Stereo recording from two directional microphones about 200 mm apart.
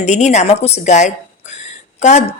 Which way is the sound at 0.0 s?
35° left (ahead or behind).